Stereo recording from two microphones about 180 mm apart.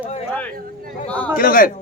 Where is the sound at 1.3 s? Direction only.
50° left (ahead or behind).